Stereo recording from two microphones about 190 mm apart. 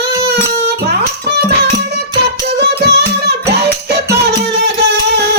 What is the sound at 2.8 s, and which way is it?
Singing, 60° right (ahead or behind).